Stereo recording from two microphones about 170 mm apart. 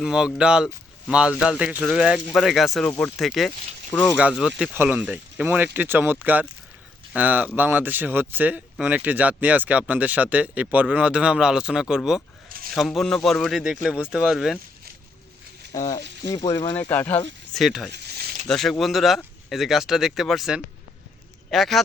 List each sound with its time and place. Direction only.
0.0 s speech: 5° right (ahead or behind)
15.7 s frying: 20° left (ahead or behind)
16.7 s speech: 15° left (ahead or behind)
17.5 s speech: centre (ahead or behind)
17.9 s a sound: 65° right (ahead or behind)
18.4 s speech: centre (ahead or behind)